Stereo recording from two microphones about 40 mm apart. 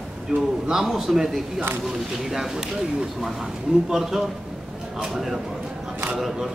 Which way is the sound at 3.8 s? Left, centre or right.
Centre.